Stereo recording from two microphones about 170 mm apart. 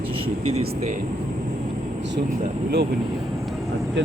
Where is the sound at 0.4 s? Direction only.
35° right (ahead or behind).